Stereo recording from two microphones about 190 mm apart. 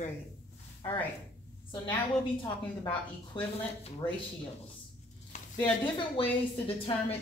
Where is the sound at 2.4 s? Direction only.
25° left (ahead or behind).